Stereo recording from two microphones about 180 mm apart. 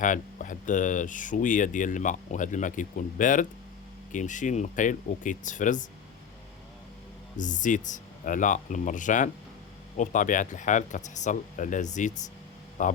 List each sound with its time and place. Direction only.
0.0 s speech: 45° left (ahead or behind)
7.3 s speech: 45° left (ahead or behind)